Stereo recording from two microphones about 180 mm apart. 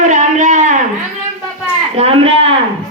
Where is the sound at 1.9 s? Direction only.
35° right (ahead or behind).